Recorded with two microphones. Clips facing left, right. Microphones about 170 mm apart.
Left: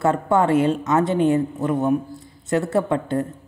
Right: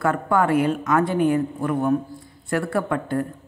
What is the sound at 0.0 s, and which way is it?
Speech, 25° left (ahead or behind).